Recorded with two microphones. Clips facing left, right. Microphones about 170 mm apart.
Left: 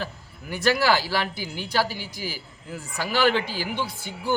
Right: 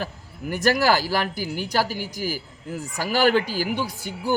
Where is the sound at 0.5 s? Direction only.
45° right (ahead or behind).